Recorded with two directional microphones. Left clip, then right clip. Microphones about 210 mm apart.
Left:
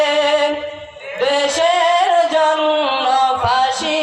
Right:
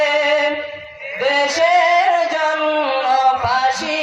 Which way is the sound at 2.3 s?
30° right (ahead or behind).